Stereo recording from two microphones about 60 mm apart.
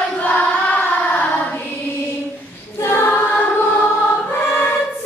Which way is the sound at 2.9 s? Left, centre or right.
Left.